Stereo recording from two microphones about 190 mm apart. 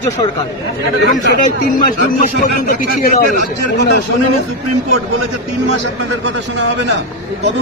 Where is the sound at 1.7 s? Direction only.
45° left (ahead or behind).